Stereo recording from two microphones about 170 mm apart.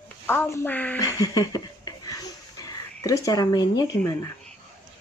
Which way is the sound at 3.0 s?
20° left (ahead or behind).